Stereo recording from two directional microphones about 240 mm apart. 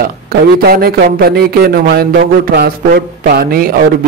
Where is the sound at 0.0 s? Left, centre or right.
Right.